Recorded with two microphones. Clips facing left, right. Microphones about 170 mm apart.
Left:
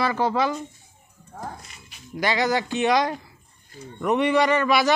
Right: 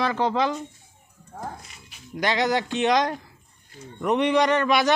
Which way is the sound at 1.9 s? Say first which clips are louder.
Even; 5° left (ahead or behind).